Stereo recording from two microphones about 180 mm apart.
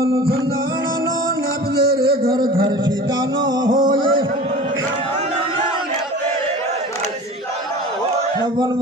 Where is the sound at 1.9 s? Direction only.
55° right (ahead or behind).